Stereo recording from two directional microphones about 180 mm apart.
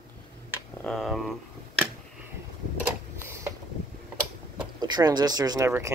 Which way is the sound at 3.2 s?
15° right (ahead or behind).